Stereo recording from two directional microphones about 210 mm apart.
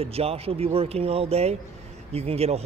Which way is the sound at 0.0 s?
30° right (ahead or behind).